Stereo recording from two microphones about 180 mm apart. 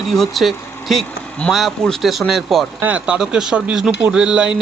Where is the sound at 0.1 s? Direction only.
Centre (ahead or behind).